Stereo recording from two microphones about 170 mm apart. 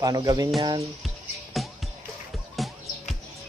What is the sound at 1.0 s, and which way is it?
Music, centre (ahead or behind).